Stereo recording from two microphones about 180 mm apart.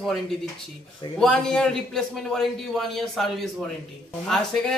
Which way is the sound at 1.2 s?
5° left (ahead or behind).